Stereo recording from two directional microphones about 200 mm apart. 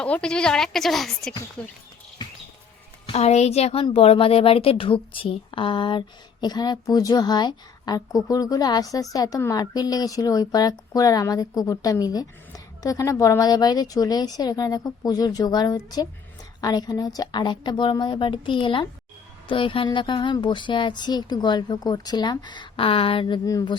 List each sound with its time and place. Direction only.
0.0 s a woman's voice: 5° left (ahead or behind)
3.1 s a woman's voice: 30° left (ahead or behind)